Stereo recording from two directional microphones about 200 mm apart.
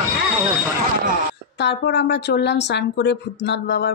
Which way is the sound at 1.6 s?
55° left (ahead or behind).